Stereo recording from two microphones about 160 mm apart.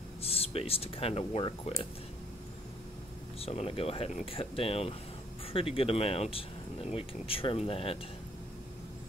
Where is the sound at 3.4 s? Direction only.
40° left (ahead or behind).